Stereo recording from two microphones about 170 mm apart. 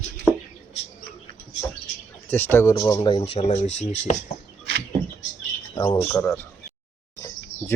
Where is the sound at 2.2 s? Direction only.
10° left (ahead or behind); by 3.4 s 30° left (ahead or behind).